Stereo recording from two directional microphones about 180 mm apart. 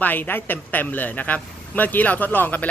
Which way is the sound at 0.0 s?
10° left (ahead or behind).